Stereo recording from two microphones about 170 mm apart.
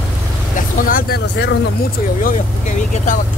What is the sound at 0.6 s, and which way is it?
Speech, 55° left (ahead or behind).